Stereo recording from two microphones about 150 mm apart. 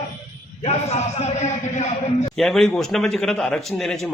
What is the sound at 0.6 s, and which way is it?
A man's voice, 45° left (ahead or behind).